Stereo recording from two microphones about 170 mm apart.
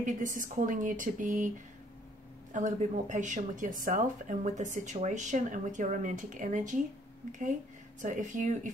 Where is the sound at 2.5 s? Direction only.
50° right (ahead or behind).